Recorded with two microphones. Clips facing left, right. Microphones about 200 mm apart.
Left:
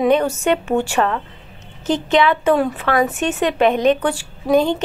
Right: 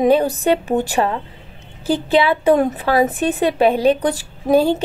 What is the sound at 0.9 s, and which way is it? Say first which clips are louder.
Speech: even; 15° right (ahead or behind).